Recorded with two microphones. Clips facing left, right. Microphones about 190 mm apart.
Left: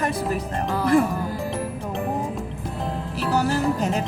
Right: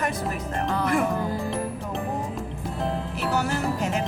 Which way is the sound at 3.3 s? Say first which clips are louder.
Left 5 dB; 35° left (ahead or behind).